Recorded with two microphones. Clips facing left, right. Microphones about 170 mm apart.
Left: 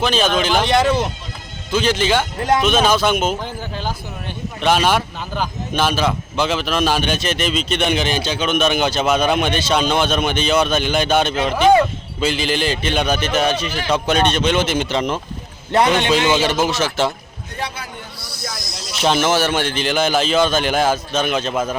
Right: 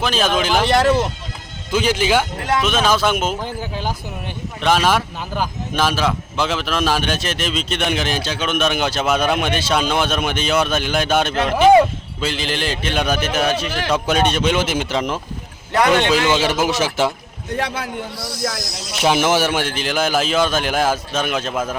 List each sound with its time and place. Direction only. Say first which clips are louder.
0.0 s a man's voice: left 1 dB; centre (ahead or behind)
4.6 s a man's voice: even; centre (ahead or behind)
15.7 s a man's voice: even; 25° left (ahead or behind)
16.4 s speech: even; 5° right (ahead or behind)
17.6 s speech: right 3 dB; 90° right
18.9 s a man's voice: even; 10° right (ahead or behind)